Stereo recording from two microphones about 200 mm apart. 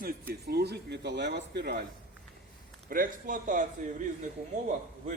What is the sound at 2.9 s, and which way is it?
A man's voice, 40° right (ahead or behind).